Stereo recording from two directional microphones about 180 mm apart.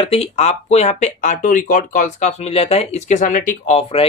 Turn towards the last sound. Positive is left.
turn(degrees=35)  # may be behind; listen again after turning